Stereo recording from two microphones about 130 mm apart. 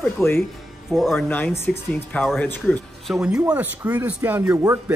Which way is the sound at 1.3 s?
15° left (ahead or behind).